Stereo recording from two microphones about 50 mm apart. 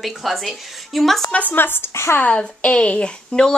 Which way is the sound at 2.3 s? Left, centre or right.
Left.